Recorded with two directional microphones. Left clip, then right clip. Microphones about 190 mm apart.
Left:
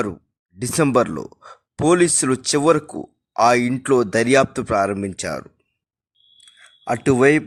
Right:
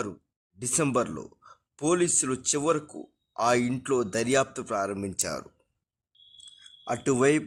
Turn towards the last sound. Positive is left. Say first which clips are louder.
# left 8 dB
turn(degrees=25)  # may be behind; listen again after turning